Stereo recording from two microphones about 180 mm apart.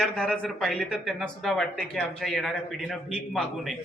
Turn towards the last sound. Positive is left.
turn(degrees=0)  # may be behind; listen again after turning